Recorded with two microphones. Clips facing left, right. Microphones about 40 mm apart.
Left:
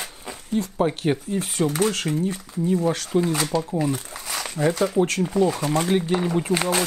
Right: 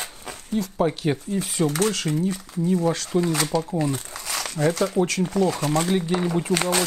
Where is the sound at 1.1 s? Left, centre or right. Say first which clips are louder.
Left 1 dB; left.